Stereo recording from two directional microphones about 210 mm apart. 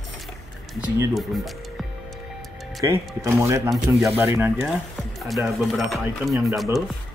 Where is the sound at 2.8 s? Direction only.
15° right (ahead or behind).